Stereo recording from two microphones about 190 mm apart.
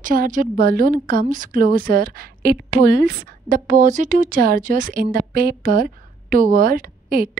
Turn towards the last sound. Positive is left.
turn(degrees=-50)  # may be behind; listen again after turning